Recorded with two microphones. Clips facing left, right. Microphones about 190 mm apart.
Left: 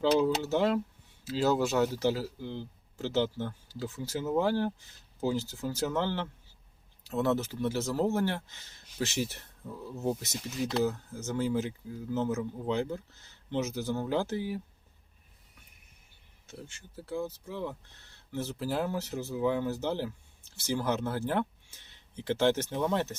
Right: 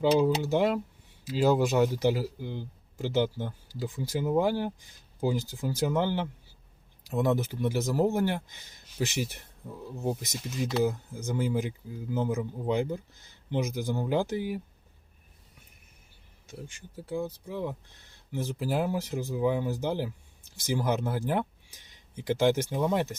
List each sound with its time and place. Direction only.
0.0 s speech: 15° right (ahead or behind)
16.5 s speech: 15° right (ahead or behind)